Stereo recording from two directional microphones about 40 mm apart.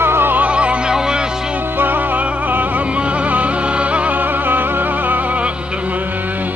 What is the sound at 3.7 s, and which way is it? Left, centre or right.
Music, right.